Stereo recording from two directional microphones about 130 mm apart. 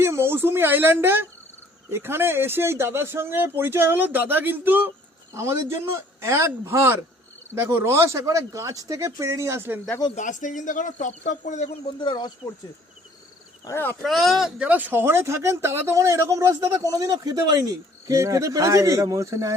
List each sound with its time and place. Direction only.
0.0 s a woman's voice: 20° right (ahead or behind)
10.2 s speech: 85° left; by 11.7 s 70° left (ahead or behind)
11.9 s speech: 35° left (ahead or behind)
13.7 s speech: 20° left (ahead or behind)
14.0 s speech: centre (ahead or behind); by 19.5 s 25° right (ahead or behind)